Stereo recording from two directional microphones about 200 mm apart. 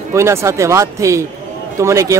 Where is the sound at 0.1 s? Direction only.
15° right (ahead or behind).